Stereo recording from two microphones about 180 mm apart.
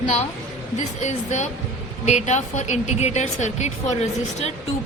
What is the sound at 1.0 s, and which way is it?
A woman's voice, 40° left (ahead or behind).